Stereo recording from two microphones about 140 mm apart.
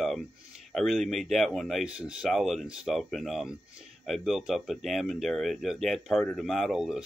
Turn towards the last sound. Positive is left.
turn(degrees=-5)  # may be behind; listen again after turning